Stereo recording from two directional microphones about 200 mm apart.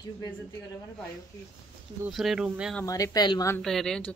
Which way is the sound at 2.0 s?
Centre (ahead or behind).